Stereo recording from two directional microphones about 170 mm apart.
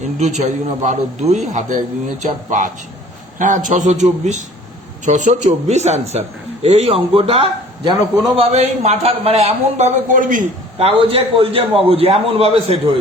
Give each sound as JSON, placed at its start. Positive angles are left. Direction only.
{"t": 0.2, "sound": "a man's voice", "side_deg": -45}
{"t": 10.8, "sound": "a man's voice", "side_deg": -35}